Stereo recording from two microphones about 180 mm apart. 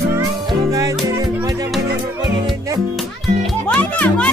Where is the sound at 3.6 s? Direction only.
10° left (ahead or behind).